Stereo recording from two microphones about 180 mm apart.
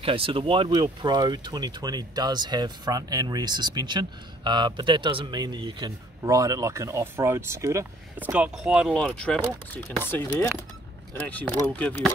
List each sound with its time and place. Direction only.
0.0 s a man's voice: 30° right (ahead or behind); by 12.1 s 10° left (ahead or behind)